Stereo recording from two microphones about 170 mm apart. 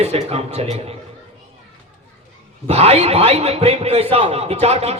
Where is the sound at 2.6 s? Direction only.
35° right (ahead or behind).